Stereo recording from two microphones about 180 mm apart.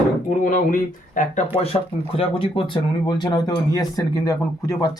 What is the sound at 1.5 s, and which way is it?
Speech, 35° left (ahead or behind).